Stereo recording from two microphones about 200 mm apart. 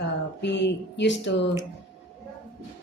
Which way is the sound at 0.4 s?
60° left (ahead or behind).